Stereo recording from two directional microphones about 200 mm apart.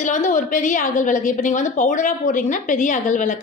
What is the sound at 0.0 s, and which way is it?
A woman's voice, 40° left (ahead or behind).